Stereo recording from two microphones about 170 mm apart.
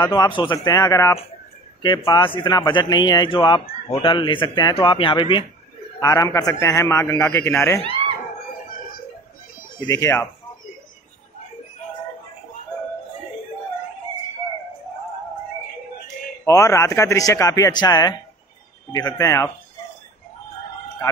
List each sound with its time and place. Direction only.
0.0 s a man's voice: 25° left (ahead or behind)
9.8 s a man's voice: 20° left (ahead or behind)
16.4 s a man's voice: 20° left (ahead or behind)